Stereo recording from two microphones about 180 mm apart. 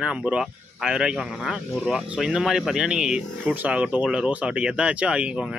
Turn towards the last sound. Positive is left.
turn(degrees=-5)  # may be behind; listen again after turning